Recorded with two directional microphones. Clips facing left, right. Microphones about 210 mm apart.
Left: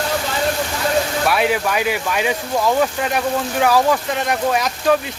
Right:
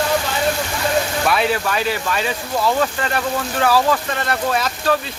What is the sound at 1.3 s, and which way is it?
Speech, 10° left (ahead or behind).